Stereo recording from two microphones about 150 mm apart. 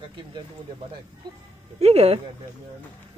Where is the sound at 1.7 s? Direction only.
45° right (ahead or behind).